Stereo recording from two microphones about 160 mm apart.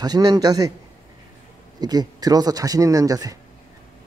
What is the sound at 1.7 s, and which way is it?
Speech, 25° right (ahead or behind).